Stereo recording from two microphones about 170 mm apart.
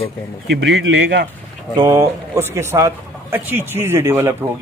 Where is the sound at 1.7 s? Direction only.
20° right (ahead or behind).